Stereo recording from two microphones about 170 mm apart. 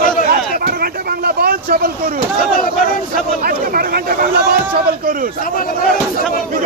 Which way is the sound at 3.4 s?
60° right (ahead or behind).